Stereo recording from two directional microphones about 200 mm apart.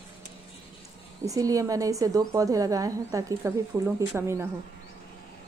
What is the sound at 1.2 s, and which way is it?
A woman's voice, 15° right (ahead or behind).